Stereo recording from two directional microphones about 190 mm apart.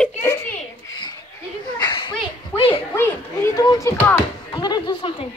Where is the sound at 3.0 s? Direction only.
15° left (ahead or behind).